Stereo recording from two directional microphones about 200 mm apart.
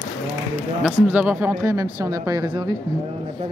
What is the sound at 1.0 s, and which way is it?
Speech, 10° right (ahead or behind).